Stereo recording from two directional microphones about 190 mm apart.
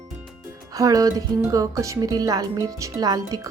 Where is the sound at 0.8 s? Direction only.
20° right (ahead or behind).